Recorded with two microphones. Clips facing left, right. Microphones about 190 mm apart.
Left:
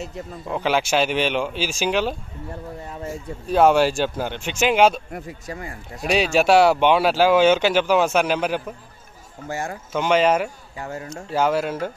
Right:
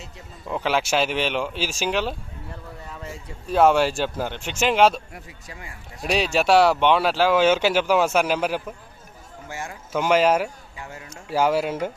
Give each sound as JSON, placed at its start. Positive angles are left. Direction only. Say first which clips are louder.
{"t": 0.5, "sound": "speech", "louder": "left 2 dB", "side_deg": 0}
{"t": 2.9, "sound": "speech", "louder": "left 5 dB", "side_deg": 45}
{"t": 3.4, "sound": "speech", "louder": "left 2 dB", "side_deg": 0}
{"t": 5.1, "sound": "speech", "louder": "left 9 dB", "side_deg": 45}
{"t": 6.0, "sound": "speech", "louder": "left 3 dB", "side_deg": 0}
{"t": 9.5, "sound": "speech", "louder": "left 6 dB", "side_deg": 40}
{"t": 9.9, "sound": "speech", "louder": "even", "side_deg": -5}
{"t": 10.8, "sound": "speech", "louder": "left 8 dB", "side_deg": 40}
{"t": 11.1, "sound": "speech", "louder": "even", "side_deg": -10}